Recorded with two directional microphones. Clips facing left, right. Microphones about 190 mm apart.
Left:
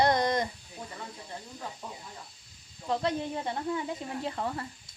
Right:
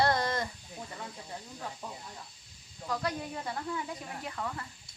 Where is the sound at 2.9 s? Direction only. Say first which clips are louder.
Left 5 dB; 25° left (ahead or behind).